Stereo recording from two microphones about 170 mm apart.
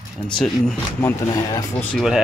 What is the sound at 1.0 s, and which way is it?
Speech, 20° left (ahead or behind).